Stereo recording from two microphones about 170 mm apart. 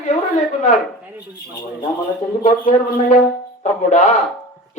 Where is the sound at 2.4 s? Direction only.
45° left (ahead or behind).